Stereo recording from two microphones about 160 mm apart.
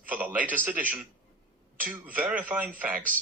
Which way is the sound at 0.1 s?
10° right (ahead or behind).